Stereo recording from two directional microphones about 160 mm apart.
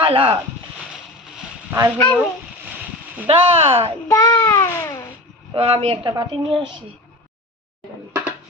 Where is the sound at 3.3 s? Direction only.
35° right (ahead or behind).